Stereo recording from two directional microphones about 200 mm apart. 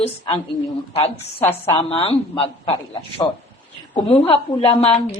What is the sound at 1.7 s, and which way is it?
A man's voice, 30° left (ahead or behind).